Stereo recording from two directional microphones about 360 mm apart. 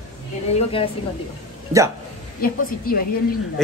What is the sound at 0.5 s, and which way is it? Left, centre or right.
Speech, centre.